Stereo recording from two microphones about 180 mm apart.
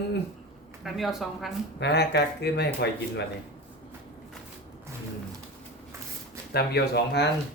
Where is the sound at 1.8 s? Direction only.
70° left (ahead or behind).